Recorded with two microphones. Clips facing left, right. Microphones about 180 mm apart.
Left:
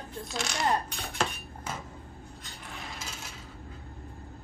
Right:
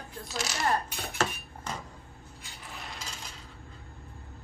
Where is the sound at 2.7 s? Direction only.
Centre (ahead or behind).